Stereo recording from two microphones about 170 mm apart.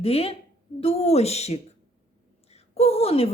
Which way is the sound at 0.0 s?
35° left (ahead or behind).